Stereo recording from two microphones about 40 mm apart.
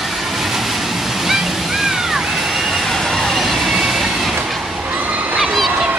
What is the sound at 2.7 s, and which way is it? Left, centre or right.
Vehicle, centre.